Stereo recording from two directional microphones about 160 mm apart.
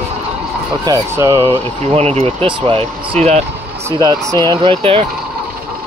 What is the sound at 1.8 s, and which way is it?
Speech, 40° right (ahead or behind).